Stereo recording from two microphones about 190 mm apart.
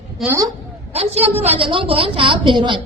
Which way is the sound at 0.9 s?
30° right (ahead or behind).